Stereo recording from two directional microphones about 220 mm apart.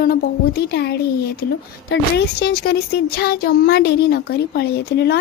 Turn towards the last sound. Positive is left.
turn(degrees=45)  # may be behind; listen again after turning